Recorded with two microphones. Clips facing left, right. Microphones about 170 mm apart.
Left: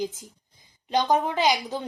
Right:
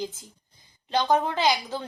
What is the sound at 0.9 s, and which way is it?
Speech, 15° left (ahead or behind).